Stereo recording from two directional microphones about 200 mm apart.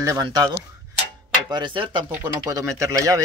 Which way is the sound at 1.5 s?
20° right (ahead or behind).